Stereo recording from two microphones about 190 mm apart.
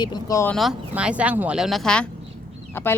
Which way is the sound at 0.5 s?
Centre (ahead or behind).